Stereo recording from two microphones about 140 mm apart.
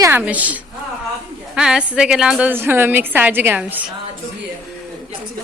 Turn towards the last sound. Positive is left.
turn(degrees=-10)  # may be behind; listen again after turning